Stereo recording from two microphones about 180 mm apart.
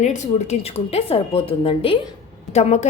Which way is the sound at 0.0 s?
40° left (ahead or behind).